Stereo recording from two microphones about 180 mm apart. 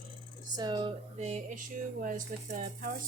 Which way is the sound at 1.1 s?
40° right (ahead or behind).